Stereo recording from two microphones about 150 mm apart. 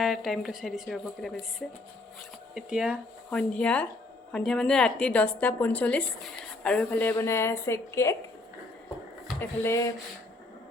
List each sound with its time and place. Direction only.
0.0 s a woman's voice: centre (ahead or behind)
3.3 s a woman's voice: 5° left (ahead or behind)
9.4 s speech: 20° left (ahead or behind)